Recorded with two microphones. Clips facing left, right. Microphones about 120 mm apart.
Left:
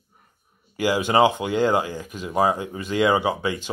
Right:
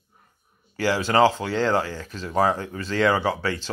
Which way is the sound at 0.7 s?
15° left (ahead or behind).